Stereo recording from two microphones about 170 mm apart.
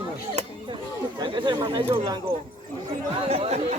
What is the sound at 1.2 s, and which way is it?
Speech, 25° right (ahead or behind).